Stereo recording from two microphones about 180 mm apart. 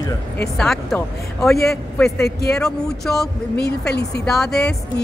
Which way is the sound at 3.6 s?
65° left (ahead or behind).